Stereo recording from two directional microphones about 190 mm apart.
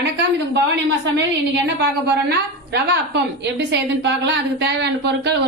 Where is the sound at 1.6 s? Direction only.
60° right (ahead or behind).